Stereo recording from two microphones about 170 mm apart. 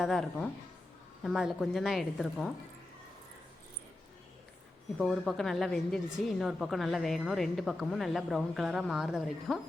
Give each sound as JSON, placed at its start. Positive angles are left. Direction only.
{"t": 0.0, "sound": "a woman's voice", "side_deg": 0}
{"t": 4.9, "sound": "a woman's voice", "side_deg": 5}